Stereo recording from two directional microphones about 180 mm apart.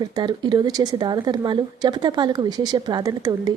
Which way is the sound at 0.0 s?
25° right (ahead or behind).